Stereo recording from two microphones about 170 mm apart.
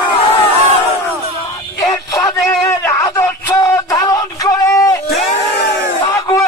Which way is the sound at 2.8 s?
15° left (ahead or behind).